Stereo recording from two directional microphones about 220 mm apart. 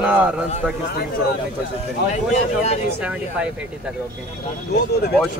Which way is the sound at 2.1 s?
30° left (ahead or behind).